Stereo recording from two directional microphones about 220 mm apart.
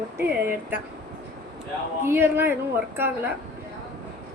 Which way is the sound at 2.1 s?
10° right (ahead or behind).